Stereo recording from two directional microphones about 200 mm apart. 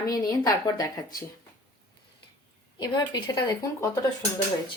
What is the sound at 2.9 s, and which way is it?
Speech, 20° left (ahead or behind).